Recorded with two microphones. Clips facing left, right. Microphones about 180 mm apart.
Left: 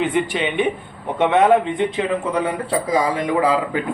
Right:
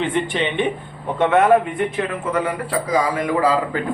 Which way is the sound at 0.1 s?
10° left (ahead or behind).